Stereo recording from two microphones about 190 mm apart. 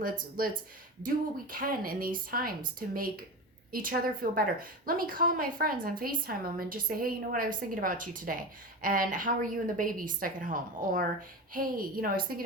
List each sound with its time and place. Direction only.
0.0 s a woman's voice: 50° right (ahead or behind)